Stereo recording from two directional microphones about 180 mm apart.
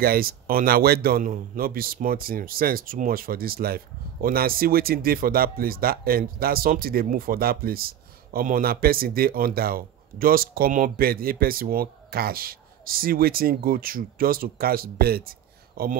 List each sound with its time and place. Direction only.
0.0 s speech: 55° right (ahead or behind)